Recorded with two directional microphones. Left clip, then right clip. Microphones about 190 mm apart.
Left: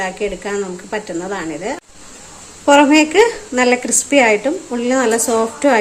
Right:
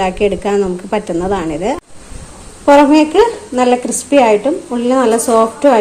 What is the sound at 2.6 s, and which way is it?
A woman's voice, 10° left (ahead or behind).